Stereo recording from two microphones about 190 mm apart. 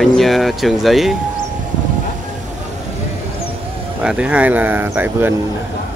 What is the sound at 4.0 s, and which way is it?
Speech, 5° right (ahead or behind).